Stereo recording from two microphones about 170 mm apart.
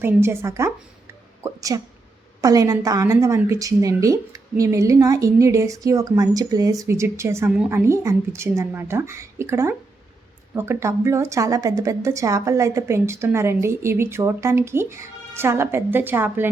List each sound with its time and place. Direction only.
0.0 s a woman's voice: 15° right (ahead or behind)